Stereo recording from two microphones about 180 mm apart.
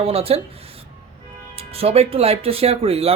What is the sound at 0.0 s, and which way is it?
Speech, 35° right (ahead or behind).